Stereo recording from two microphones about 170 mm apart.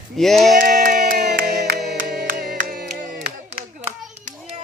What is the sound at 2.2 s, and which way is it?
Music, 60° right (ahead or behind).